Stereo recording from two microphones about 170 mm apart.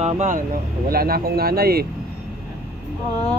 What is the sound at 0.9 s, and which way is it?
Speech, 60° right (ahead or behind).